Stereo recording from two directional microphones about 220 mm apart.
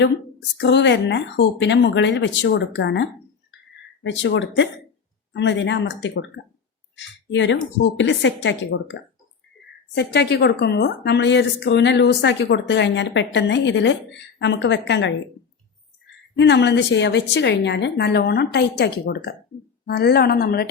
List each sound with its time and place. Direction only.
0.6 s a woman's voice: 55° left (ahead or behind)
16.4 s a woman's voice: 50° left (ahead or behind)